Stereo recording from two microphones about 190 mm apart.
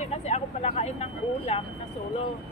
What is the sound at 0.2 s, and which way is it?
Speech, 35° left (ahead or behind).